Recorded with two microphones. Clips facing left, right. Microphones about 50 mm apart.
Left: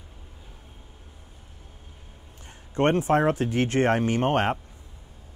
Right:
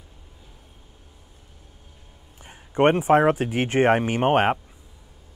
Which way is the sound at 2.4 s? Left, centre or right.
Centre.